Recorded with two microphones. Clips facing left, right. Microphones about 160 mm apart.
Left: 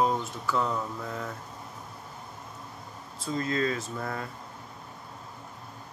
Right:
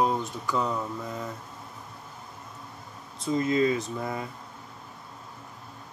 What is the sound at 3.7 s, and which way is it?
Mantra, centre (ahead or behind).